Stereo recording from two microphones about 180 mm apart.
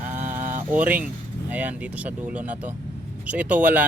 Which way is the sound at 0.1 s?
45° right (ahead or behind).